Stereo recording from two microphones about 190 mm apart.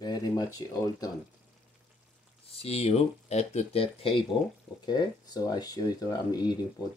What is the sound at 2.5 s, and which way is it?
Speech, 30° left (ahead or behind).